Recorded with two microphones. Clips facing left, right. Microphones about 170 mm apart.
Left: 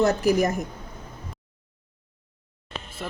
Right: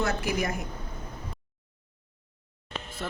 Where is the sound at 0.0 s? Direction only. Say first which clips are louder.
Left 8 dB; 40° left (ahead or behind).